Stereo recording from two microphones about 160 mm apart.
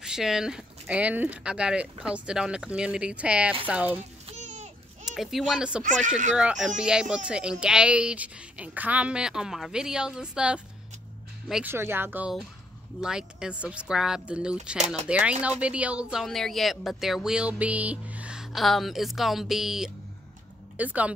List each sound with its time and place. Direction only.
0.0 s speech: 5° right (ahead or behind)
4.3 s a sound: 45° right (ahead or behind)
5.0 s speech: centre (ahead or behind)
5.9 s speech: 50° right (ahead or behind)
6.3 s speech: 5° right (ahead or behind)
11.7 s speech: 15° right (ahead or behind)